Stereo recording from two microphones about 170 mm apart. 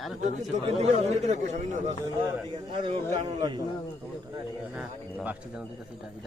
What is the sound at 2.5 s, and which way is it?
A man's voice, 25° right (ahead or behind).